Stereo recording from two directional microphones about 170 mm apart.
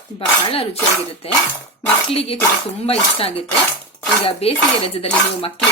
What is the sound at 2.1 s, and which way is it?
Dishes, 35° left (ahead or behind).